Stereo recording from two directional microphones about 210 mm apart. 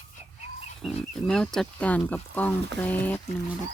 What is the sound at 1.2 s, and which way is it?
Speech, 5° left (ahead or behind).